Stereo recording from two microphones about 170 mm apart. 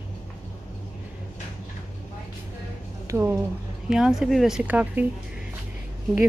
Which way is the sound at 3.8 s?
5° right (ahead or behind).